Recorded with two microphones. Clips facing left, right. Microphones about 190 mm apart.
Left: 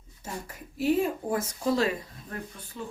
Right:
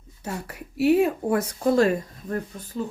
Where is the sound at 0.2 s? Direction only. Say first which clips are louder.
Right 5 dB; 70° right (ahead or behind).